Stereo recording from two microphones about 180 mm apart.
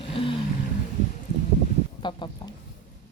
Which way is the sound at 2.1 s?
25° left (ahead or behind).